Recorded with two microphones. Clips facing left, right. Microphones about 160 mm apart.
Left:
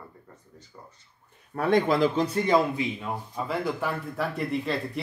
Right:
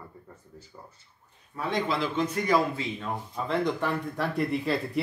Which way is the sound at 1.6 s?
50° left (ahead or behind).